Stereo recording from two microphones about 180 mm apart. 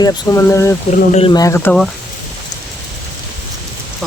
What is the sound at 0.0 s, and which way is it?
Speech, 15° left (ahead or behind).